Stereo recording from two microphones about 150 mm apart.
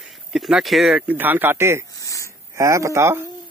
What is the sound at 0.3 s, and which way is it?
Speech, centre (ahead or behind).